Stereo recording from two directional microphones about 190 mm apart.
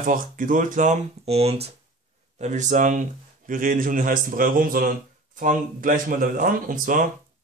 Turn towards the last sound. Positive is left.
turn(degrees=-45)  # may be behind; listen again after turning